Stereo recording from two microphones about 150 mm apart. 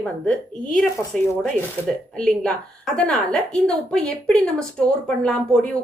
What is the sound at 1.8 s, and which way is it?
Speech, 10° left (ahead or behind).